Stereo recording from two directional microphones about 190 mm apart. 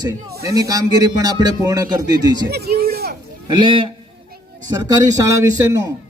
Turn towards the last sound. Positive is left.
turn(degrees=-15)  # may be behind; listen again after turning